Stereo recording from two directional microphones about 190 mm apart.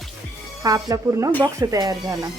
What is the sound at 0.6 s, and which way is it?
Speech, 20° right (ahead or behind).